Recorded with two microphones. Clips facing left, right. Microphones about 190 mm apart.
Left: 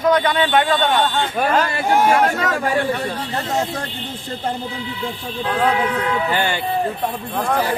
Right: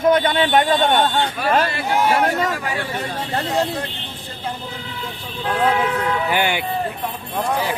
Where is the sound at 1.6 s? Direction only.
50° left (ahead or behind).